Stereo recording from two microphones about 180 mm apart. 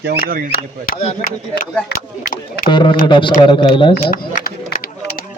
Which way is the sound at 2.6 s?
25° left (ahead or behind).